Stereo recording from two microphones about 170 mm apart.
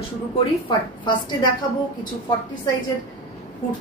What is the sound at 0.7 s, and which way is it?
Speech, 25° left (ahead or behind).